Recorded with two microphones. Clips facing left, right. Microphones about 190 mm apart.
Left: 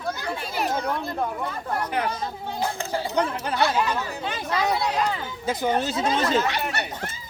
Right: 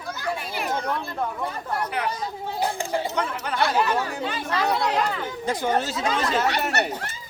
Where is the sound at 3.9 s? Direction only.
50° right (ahead or behind).